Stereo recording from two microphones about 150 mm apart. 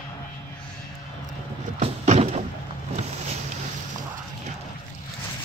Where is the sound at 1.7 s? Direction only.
45° right (ahead or behind).